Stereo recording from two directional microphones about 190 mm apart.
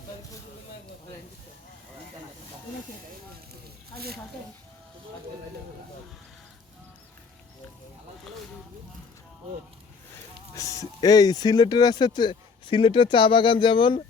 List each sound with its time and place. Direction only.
10.1 s speech: 15° left (ahead or behind)